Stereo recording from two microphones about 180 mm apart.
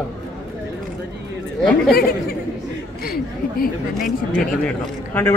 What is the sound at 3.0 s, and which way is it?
Chatter, 55° left (ahead or behind).